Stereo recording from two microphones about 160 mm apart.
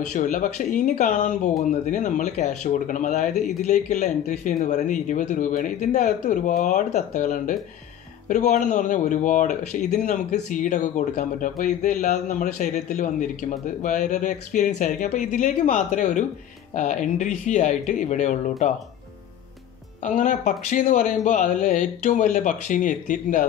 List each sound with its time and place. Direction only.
0.1 s speech: 50° left (ahead or behind)
20.0 s speech: 50° left (ahead or behind)